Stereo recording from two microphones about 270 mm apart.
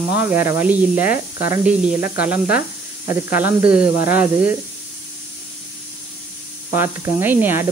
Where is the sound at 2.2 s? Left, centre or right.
Centre.